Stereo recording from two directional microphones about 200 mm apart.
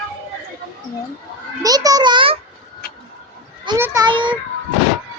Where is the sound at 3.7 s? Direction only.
15° right (ahead or behind).